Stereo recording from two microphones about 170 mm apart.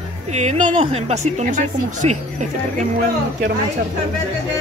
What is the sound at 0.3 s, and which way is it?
Speech, 45° right (ahead or behind).